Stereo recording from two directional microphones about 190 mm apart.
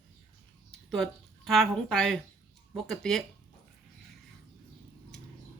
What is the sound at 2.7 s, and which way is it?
Speech, centre (ahead or behind).